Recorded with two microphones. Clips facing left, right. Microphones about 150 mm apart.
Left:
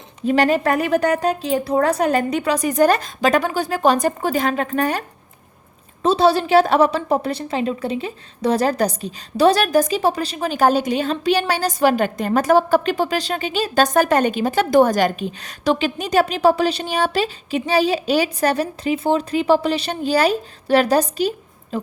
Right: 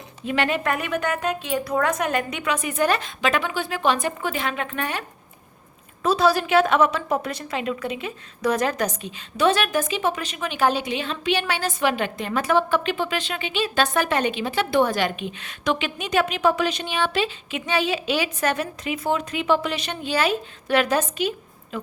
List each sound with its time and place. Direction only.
0.3 s a woman's voice: 40° left (ahead or behind)
6.0 s a woman's voice: 30° left (ahead or behind)